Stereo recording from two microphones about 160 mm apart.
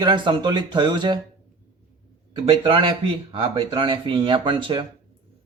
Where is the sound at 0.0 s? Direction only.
30° right (ahead or behind).